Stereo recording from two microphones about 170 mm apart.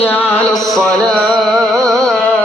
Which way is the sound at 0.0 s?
10° left (ahead or behind).